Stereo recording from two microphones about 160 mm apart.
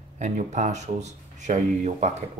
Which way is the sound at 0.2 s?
45° right (ahead or behind).